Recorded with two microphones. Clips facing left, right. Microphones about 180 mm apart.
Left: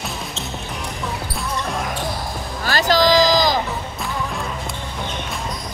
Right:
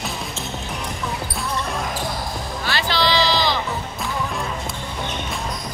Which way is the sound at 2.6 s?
40° left (ahead or behind).